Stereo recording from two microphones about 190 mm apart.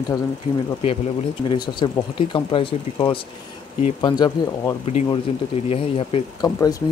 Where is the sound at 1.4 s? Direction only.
25° left (ahead or behind).